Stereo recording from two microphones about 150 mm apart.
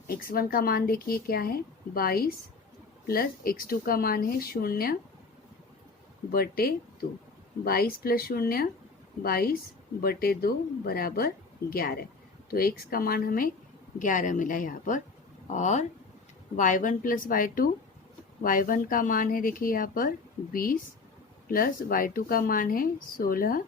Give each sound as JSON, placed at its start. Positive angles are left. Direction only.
{"t": 0.1, "sound": "a woman's voice", "side_deg": 80}
{"t": 6.3, "sound": "a woman's voice", "side_deg": 85}
{"t": 14.0, "sound": "speech", "side_deg": 60}
{"t": 15.5, "sound": "speech", "side_deg": 50}